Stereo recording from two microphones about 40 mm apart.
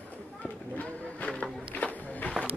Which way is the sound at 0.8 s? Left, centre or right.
Left.